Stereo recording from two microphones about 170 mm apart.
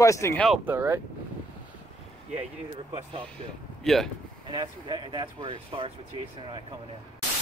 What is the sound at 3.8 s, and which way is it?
Speech, centre (ahead or behind).